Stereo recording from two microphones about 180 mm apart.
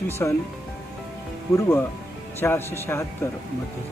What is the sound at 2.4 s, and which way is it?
Speech, 15° left (ahead or behind).